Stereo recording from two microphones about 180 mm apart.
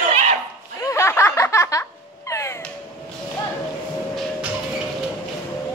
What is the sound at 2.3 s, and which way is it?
Caw, 15° left (ahead or behind).